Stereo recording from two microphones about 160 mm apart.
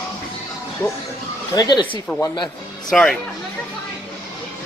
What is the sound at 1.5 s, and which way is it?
Speech, 25° left (ahead or behind).